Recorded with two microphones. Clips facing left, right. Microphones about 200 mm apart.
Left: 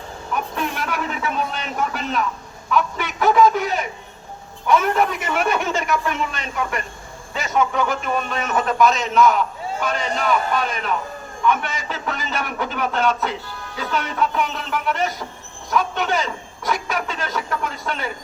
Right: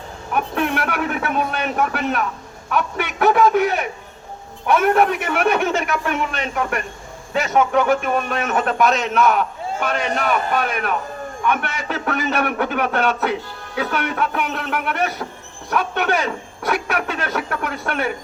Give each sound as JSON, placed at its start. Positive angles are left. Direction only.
{"t": 0.3, "sound": "a man's voice", "side_deg": -60}